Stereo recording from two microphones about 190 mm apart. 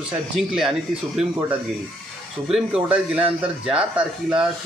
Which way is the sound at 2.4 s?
5° right (ahead or behind).